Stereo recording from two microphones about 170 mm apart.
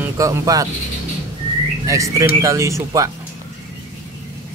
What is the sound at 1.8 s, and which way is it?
Speech, 20° right (ahead or behind).